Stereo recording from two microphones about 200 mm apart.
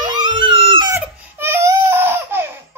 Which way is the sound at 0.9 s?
10° right (ahead or behind).